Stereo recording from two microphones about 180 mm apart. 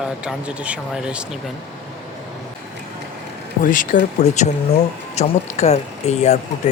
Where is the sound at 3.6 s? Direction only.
50° left (ahead or behind).